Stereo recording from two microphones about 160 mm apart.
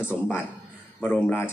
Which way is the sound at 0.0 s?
15° left (ahead or behind).